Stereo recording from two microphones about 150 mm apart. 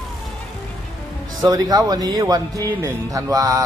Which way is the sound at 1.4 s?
25° right (ahead or behind).